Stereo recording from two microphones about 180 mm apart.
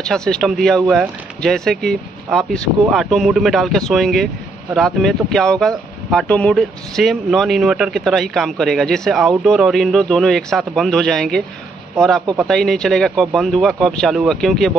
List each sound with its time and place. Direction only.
0.0 s speech: 5° left (ahead or behind)